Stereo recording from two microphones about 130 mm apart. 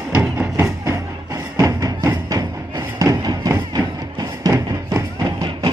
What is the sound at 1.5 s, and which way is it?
Music, 25° right (ahead or behind).